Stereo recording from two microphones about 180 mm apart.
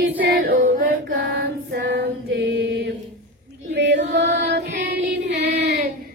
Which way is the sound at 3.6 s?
75° right (ahead or behind).